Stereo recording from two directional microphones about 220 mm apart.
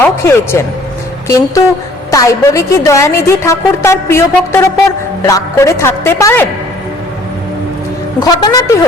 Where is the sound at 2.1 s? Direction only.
15° left (ahead or behind).